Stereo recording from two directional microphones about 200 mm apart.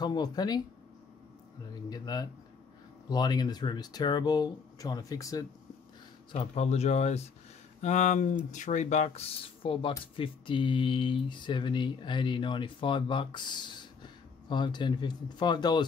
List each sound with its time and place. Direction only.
0.0 s speech: 20° left (ahead or behind)
1.9 s speech: 20° left (ahead or behind)
6.3 s speech: 30° left (ahead or behind)